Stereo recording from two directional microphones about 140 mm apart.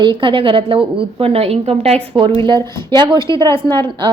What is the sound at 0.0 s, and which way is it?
A woman's voice, 35° right (ahead or behind).